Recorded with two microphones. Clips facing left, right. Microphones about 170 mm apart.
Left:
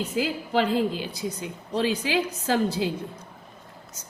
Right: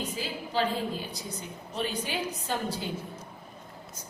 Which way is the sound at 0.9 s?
90° left.